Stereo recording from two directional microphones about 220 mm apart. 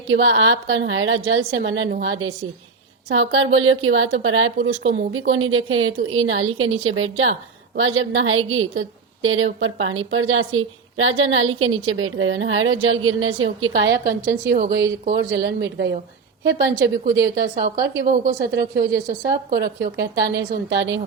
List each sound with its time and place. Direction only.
0.1 s a woman's voice: 65° right (ahead or behind)